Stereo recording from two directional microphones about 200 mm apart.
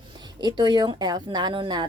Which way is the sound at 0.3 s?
20° right (ahead or behind).